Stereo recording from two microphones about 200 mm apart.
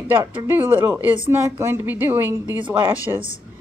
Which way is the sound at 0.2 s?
15° right (ahead or behind).